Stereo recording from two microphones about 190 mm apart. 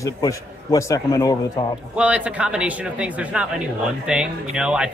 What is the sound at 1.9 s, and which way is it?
Speech, 5° right (ahead or behind).